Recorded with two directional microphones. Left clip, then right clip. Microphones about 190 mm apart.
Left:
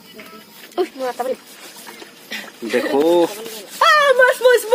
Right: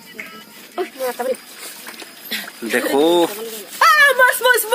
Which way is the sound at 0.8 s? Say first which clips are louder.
Left 3 dB; 70° left (ahead or behind).